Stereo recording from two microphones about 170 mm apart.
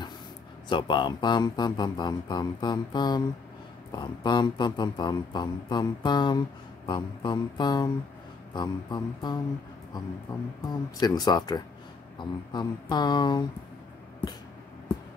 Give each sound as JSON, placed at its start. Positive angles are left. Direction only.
{"t": 0.7, "sound": "a man's voice", "side_deg": 30}
{"t": 10.7, "sound": "a man's voice", "side_deg": 25}